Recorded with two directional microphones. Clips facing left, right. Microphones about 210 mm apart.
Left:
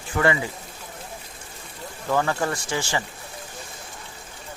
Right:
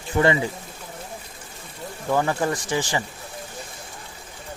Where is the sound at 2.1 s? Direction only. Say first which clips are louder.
Right 1 dB; 15° right (ahead or behind).